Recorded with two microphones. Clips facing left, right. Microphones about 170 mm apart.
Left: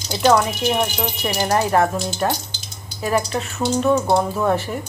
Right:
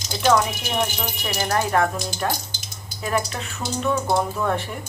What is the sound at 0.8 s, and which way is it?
A woman's voice, 10° left (ahead or behind).